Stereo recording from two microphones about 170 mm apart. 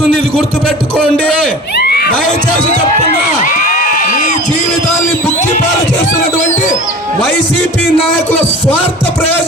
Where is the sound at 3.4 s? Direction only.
50° left (ahead or behind).